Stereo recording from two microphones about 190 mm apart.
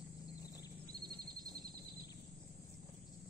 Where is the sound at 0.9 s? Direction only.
20° right (ahead or behind).